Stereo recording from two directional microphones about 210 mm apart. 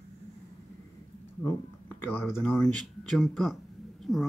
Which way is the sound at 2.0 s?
10° left (ahead or behind).